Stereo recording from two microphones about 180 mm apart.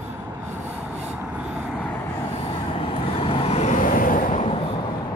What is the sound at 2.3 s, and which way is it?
Vehicle, 30° left (ahead or behind).